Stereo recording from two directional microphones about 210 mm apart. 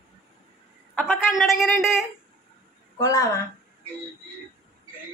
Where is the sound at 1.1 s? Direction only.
Centre (ahead or behind).